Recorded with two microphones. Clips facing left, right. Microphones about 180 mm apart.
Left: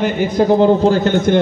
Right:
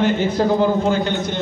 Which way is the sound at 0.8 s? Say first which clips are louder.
Left 6 dB; 40° left (ahead or behind).